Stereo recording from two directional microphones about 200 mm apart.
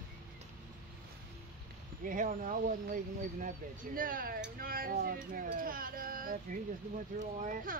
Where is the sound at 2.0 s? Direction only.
40° right (ahead or behind).